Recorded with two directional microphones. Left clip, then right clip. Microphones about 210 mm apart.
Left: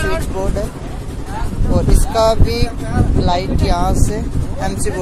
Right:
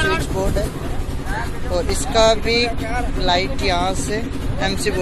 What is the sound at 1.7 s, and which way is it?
Speech, 10° left (ahead or behind).